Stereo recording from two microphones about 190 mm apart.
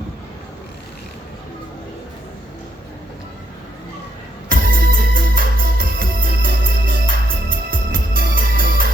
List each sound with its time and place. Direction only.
4.4 s music: 50° right (ahead or behind)